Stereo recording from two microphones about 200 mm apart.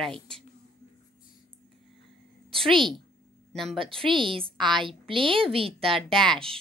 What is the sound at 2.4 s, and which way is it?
A woman's voice, 25° right (ahead or behind).